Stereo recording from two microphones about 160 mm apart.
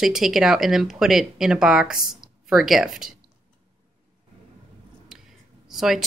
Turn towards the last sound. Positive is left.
turn(degrees=0)  # may be behind; listen again after turning